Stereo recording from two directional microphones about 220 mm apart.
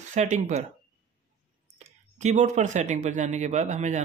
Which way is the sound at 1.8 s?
30° right (ahead or behind).